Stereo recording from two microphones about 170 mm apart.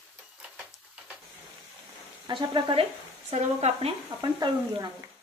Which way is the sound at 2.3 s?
30° right (ahead or behind).